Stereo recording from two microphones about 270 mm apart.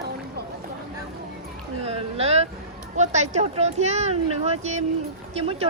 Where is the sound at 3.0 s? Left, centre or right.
Right.